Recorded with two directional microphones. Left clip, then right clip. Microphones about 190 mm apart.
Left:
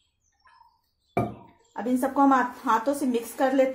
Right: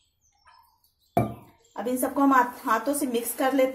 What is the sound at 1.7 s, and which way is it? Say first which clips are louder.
A woman's voice: left 2 dB; 25° left (ahead or behind).